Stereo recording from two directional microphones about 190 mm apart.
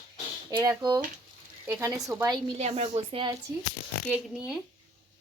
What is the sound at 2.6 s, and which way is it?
Speech, 35° right (ahead or behind).